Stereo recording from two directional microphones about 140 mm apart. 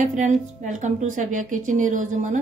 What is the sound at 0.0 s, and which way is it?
A woman's voice, 60° right (ahead or behind).